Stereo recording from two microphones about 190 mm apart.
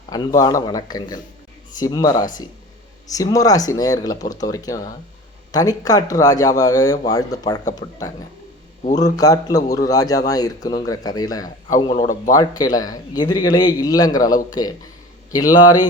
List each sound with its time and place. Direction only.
0.3 s a man's voice: 20° left (ahead or behind)
8.8 s speech: 40° left (ahead or behind)
9.0 s a man's voice: 20° left (ahead or behind)
11.4 s a man's voice: 40° left (ahead or behind)
12.3 s a man's voice: 20° left (ahead or behind)